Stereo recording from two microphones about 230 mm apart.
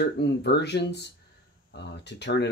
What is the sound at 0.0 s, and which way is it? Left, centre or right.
Speech, left.